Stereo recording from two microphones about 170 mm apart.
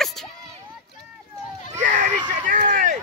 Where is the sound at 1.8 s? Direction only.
50° right (ahead or behind).